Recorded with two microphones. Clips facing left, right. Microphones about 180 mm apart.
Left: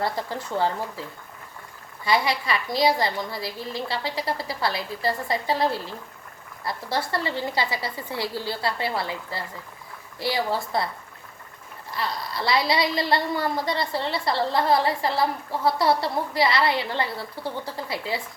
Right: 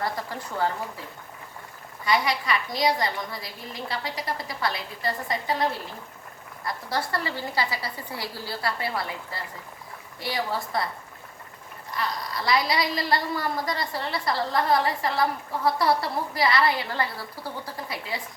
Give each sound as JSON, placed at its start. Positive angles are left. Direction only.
{"t": 0.0, "sound": "speech", "side_deg": 30}
{"t": 2.0, "sound": "a woman's voice", "side_deg": 30}
{"t": 11.9, "sound": "a woman's voice", "side_deg": 30}